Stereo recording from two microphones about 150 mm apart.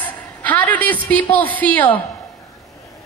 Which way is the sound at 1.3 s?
10° left (ahead or behind).